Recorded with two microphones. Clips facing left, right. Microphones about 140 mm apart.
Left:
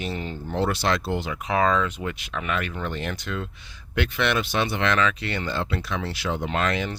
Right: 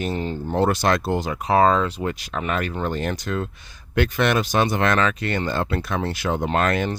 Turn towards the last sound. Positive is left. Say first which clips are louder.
# right 4 dB
turn(degrees=-50)  # may be behind; listen again after turning